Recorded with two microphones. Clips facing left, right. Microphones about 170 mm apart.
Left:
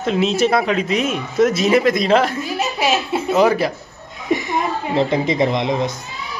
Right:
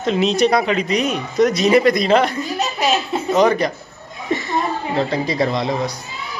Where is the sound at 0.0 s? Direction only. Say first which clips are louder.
Right 1 dB; centre (ahead or behind).